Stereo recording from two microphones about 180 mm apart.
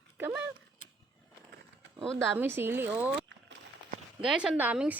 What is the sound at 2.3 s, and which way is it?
Speech, 10° right (ahead or behind).